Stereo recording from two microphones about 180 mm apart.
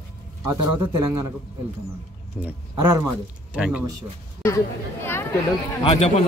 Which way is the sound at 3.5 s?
5° right (ahead or behind).